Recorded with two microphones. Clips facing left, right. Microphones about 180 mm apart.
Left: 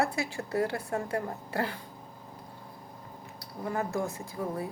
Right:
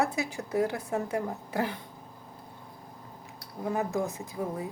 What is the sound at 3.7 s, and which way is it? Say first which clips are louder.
Speech: right 1 dB; 20° right (ahead or behind).